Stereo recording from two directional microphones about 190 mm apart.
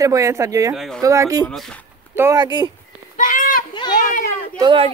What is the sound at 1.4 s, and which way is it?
Speech, 5° left (ahead or behind).